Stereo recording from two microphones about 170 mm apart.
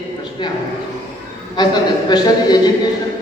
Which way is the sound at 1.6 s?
25° left (ahead or behind).